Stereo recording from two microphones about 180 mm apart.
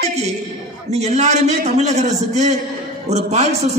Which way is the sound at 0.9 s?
40° right (ahead or behind).